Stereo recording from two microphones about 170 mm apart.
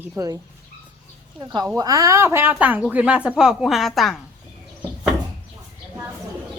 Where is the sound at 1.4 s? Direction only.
25° right (ahead or behind); by 4.1 s centre (ahead or behind).